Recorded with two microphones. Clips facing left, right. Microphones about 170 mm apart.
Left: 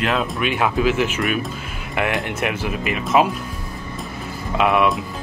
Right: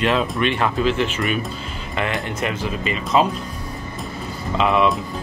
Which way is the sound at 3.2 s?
10° left (ahead or behind).